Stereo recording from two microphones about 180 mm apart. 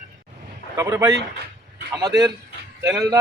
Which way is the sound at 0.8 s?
15° right (ahead or behind).